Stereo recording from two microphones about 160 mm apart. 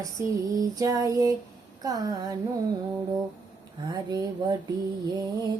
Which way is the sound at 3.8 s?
25° right (ahead or behind).